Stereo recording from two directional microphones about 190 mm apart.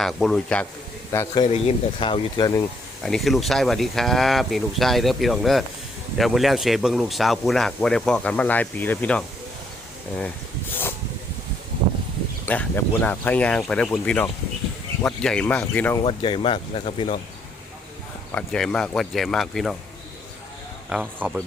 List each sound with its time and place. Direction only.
0.0 s speech: centre (ahead or behind)
1.5 s speech: 30° left (ahead or behind)
3.0 s speech: centre (ahead or behind)
12.5 s speech: 10° left (ahead or behind)
16.0 s speech: 25° left (ahead or behind)
18.3 s speech: 5° left (ahead or behind)
20.9 s speech: 5° right (ahead or behind)